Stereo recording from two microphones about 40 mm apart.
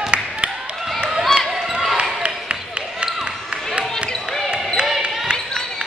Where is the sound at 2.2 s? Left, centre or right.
Right.